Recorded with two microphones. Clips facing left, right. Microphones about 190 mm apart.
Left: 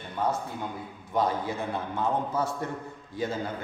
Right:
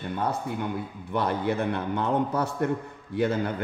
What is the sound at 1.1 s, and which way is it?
A man's voice, 65° right (ahead or behind).